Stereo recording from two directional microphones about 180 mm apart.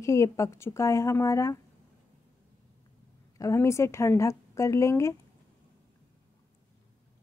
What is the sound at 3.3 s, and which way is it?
Speech, 15° left (ahead or behind).